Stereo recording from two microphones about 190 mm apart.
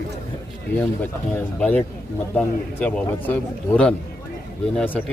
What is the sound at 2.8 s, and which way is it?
Speech, 5° left (ahead or behind).